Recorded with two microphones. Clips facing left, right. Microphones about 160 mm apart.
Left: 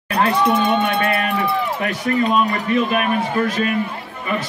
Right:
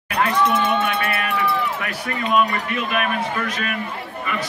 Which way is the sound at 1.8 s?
30° left (ahead or behind).